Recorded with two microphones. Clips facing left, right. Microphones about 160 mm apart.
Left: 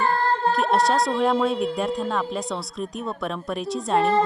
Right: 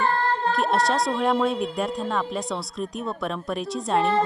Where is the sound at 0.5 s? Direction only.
Centre (ahead or behind).